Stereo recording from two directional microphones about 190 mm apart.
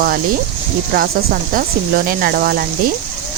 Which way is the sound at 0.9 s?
50° right (ahead or behind).